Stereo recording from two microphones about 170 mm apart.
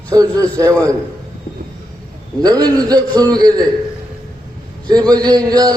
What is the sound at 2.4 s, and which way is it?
A man's voice, 20° right (ahead or behind).